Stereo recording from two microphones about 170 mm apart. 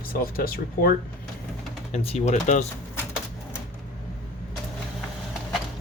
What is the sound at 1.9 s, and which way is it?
Speech, 40° left (ahead or behind).